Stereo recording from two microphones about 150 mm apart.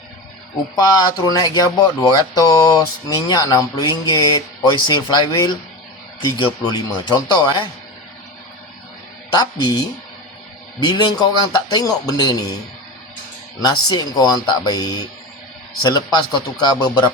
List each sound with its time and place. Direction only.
0.8 s speech: 25° left (ahead or behind)
9.3 s speech: 25° left (ahead or behind)
13.6 s speech: 25° left (ahead or behind)